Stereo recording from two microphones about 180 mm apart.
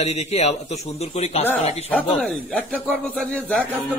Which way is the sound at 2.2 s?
5° left (ahead or behind).